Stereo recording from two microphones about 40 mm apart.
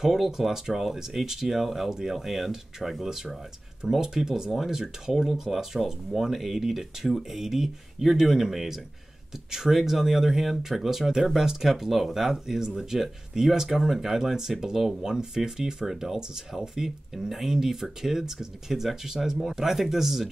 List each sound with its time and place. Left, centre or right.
0.0 s speech: centre